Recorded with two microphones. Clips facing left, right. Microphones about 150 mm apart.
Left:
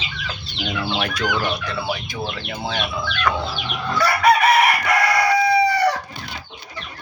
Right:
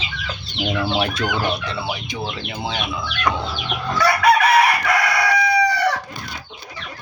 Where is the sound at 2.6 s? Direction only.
15° right (ahead or behind).